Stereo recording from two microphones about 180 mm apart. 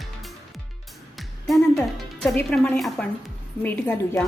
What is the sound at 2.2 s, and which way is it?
A woman's voice, 5° left (ahead or behind).